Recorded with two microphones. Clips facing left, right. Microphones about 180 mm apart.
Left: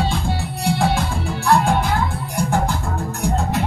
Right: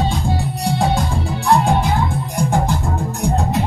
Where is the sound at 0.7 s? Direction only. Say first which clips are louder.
Right 4 dB; 15° right (ahead or behind).